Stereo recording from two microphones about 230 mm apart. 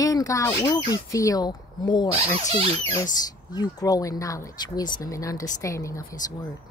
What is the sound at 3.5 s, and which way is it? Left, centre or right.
Speech, centre.